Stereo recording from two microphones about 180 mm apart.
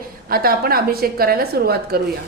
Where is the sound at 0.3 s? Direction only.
55° right (ahead or behind).